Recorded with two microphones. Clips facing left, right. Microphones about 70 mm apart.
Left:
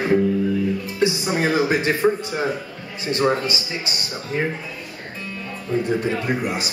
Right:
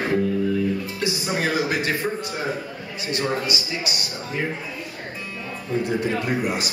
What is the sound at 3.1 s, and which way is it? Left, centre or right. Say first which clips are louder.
Speech: left 5 dB; left.